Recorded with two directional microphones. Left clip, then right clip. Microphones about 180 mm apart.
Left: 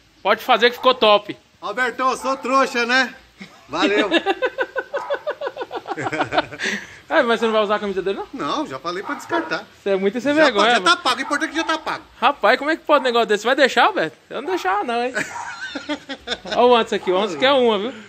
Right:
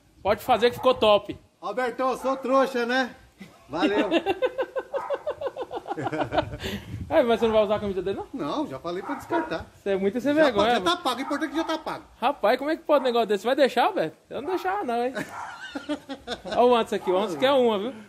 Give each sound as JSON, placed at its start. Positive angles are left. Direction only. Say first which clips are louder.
{"t": 0.2, "sound": "speech", "louder": "left 6 dB", "side_deg": 10}
{"t": 1.6, "sound": "a man's voice", "louder": "left 6 dB", "side_deg": 0}
{"t": 4.0, "sound": "a sound", "louder": "left 5 dB", "side_deg": 20}
{"t": 6.1, "sound": "speech", "louder": "left 6 dB", "side_deg": 20}
{"t": 6.7, "sound": "a man's voice", "louder": "left 3 dB", "side_deg": 5}
{"t": 9.8, "sound": "speech", "louder": "left 5 dB", "side_deg": 20}
{"t": 10.8, "sound": "a woman's voice", "louder": "left 8 dB", "side_deg": -15}
{"t": 12.2, "sound": "speech", "louder": "left 7 dB", "side_deg": 10}
{"t": 15.5, "sound": "a sound", "louder": "left 6 dB", "side_deg": 15}
{"t": 16.5, "sound": "a man's voice", "louder": "left 5 dB", "side_deg": 40}